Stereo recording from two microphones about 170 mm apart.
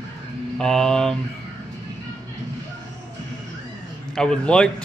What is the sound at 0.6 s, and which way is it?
Speech, 5° left (ahead or behind).